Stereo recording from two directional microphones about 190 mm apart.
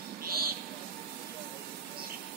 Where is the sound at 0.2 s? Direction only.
50° right (ahead or behind).